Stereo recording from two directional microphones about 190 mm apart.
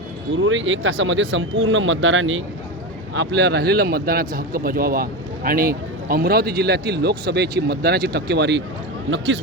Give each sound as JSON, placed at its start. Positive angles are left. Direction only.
{"t": 0.4, "sound": "speech", "side_deg": -85}
{"t": 3.2, "sound": "a man's voice", "side_deg": -65}
{"t": 9.0, "sound": "speech", "side_deg": -75}